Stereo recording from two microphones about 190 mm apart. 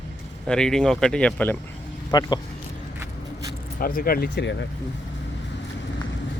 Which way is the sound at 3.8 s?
50° left (ahead or behind).